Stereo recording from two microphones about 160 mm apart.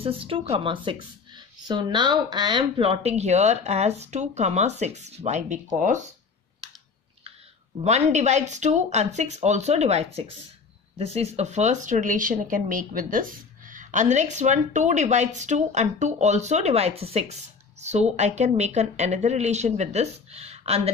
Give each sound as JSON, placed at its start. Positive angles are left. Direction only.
{"t": 0.0, "sound": "speech", "side_deg": -35}
{"t": 7.8, "sound": "speech", "side_deg": -45}